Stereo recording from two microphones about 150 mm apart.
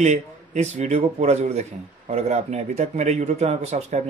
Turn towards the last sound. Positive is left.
turn(degrees=-50)  # may be behind; listen again after turning